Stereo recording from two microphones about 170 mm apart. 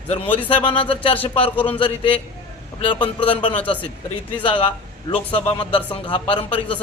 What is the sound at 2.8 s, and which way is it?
A man's voice, 30° left (ahead or behind).